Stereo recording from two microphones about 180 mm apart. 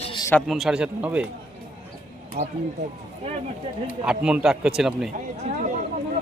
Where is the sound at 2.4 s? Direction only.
55° right (ahead or behind).